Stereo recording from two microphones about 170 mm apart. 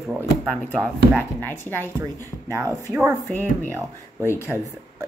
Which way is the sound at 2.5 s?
20° right (ahead or behind).